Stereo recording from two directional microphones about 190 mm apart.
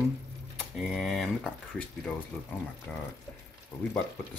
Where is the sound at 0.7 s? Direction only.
Centre (ahead or behind).